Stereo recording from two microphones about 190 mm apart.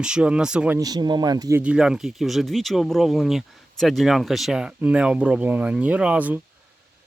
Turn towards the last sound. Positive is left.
turn(degrees=-10)  # may be behind; listen again after turning